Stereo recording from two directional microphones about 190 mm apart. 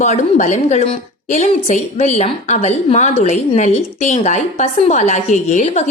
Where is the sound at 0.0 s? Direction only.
35° left (ahead or behind).